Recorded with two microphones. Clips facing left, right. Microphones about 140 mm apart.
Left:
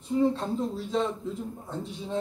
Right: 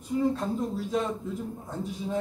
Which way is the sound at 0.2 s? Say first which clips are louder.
Left 2 dB; 30° left (ahead or behind).